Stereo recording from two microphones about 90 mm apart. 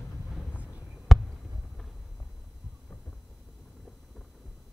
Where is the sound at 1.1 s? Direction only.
Centre (ahead or behind).